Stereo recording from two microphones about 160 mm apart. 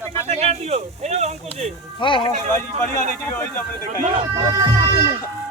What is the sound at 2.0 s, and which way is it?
Speech, 30° left (ahead or behind).